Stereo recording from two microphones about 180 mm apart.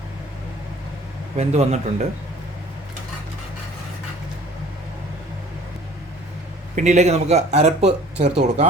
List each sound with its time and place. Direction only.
1.4 s speech: 35° right (ahead or behind)
6.7 s speech: 40° right (ahead or behind)